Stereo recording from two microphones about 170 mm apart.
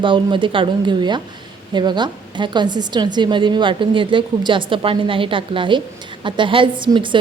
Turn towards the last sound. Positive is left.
turn(degrees=-30)  # may be behind; listen again after turning